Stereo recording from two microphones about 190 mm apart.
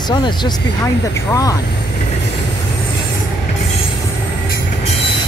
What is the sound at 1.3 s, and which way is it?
Speech, 20° left (ahead or behind).